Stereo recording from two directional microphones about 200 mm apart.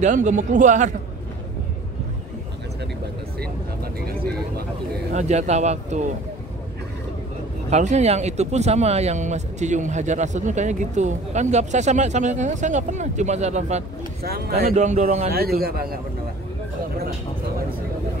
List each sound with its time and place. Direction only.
0.0 s speech: 40° right (ahead or behind)
4.0 s speech: 50° right (ahead or behind)
5.1 s speech: 35° right (ahead or behind)
7.7 s speech: 35° right (ahead or behind)
15.3 s speech: 50° right (ahead or behind)